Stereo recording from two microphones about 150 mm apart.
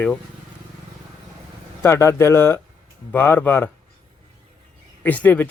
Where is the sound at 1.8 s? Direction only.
15° left (ahead or behind).